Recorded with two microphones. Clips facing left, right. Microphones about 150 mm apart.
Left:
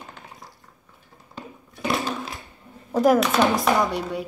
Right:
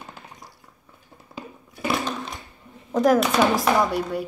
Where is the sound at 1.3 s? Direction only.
Centre (ahead or behind).